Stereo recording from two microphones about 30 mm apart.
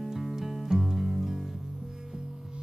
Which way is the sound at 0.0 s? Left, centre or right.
Centre.